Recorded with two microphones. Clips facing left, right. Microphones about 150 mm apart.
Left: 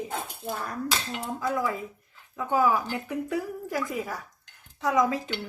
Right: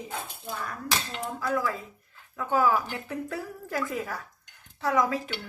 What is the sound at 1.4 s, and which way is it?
A woman's voice, 20° left (ahead or behind).